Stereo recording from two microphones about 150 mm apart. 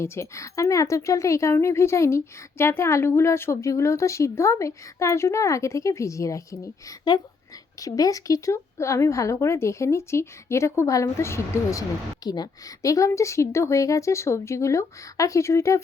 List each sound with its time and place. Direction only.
0.0 s speech: 20° left (ahead or behind)